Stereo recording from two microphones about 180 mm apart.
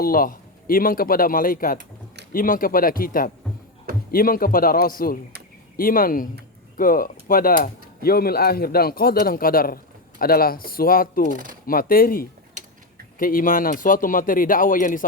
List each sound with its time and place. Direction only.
0.0 s speech: 55° left (ahead or behind)